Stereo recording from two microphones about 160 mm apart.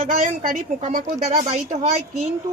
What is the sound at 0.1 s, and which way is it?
A woman's voice, 55° right (ahead or behind).